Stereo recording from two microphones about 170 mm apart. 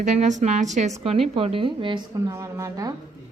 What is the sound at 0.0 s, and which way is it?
Speech, 45° right (ahead or behind).